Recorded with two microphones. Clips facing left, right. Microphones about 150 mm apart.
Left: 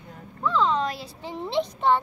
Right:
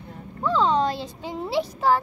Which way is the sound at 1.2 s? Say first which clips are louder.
Left 1 dB; 10° right (ahead or behind).